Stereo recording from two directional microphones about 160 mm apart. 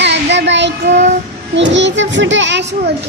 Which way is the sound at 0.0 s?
90° right.